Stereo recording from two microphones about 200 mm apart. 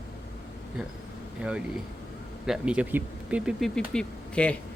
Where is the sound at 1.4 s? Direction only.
5° right (ahead or behind).